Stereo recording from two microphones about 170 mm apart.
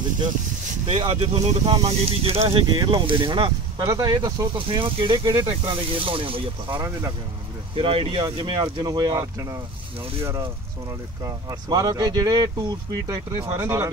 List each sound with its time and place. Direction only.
0.8 s speech: 35° right (ahead or behind)
6.8 s speech: 20° right (ahead or behind)
7.7 s speech: 35° right (ahead or behind)
11.2 s speech: 20° right (ahead or behind)